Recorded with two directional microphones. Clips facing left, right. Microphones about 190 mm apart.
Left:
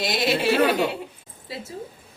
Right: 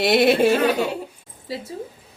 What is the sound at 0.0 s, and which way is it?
Speech, 60° right (ahead or behind).